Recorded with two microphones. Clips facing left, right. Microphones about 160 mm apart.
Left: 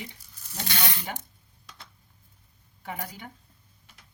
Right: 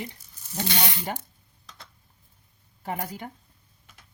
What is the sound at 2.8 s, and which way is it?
Speech, 45° right (ahead or behind).